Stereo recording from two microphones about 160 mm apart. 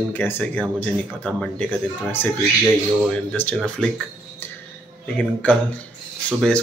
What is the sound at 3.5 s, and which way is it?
Speech, 5° left (ahead or behind).